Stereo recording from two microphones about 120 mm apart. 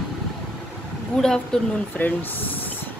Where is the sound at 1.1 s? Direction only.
5° left (ahead or behind).